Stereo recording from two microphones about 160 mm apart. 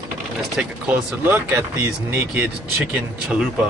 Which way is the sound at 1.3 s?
15° right (ahead or behind).